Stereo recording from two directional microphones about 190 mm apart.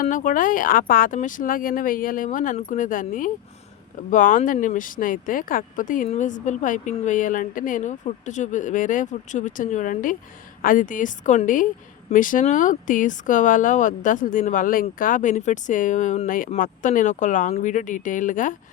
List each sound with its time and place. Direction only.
0.0 s speech: 45° left (ahead or behind)